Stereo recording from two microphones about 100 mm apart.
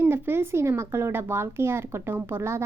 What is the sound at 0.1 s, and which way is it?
Speech, 25° right (ahead or behind).